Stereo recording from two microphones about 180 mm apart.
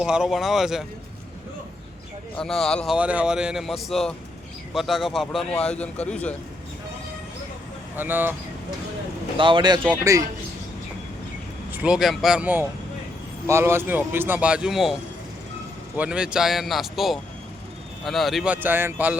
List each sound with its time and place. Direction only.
0.0 s a man's voice: 5° right (ahead or behind)
2.3 s a man's voice: 5° left (ahead or behind)
7.9 s speech: 10° right (ahead or behind)
9.4 s speech: 25° right (ahead or behind)
11.7 s a man's voice: 5° right (ahead or behind)
16.0 s a man's voice: 5° right (ahead or behind)